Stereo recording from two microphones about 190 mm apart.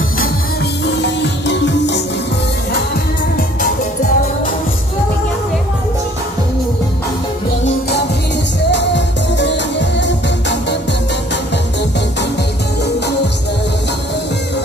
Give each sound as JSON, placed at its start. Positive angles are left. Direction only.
{"t": 0.8, "sound": "music", "side_deg": 65}
{"t": 3.3, "sound": "music", "side_deg": 45}
{"t": 8.7, "sound": "music", "side_deg": 65}